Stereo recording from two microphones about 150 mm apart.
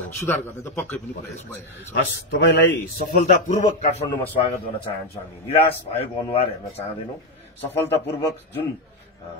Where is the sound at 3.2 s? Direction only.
50° left (ahead or behind).